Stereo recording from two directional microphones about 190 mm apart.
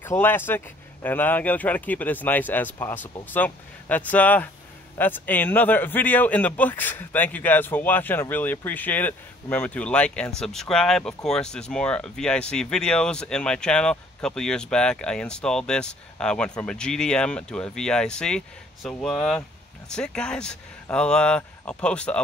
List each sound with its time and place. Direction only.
0.0 s a man's voice: 10° left (ahead or behind)